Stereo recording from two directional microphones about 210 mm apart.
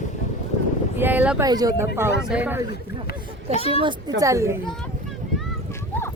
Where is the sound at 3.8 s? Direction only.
20° right (ahead or behind).